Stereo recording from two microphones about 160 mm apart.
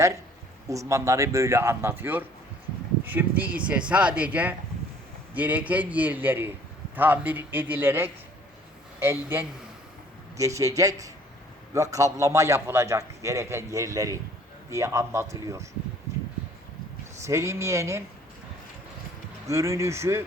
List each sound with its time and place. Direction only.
0.7 s a man's voice: 20° right (ahead or behind)
17.2 s speech: 15° right (ahead or behind)
19.5 s speech: 20° right (ahead or behind)